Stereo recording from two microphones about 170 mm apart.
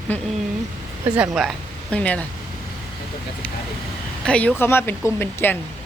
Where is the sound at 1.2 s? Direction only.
5° right (ahead or behind).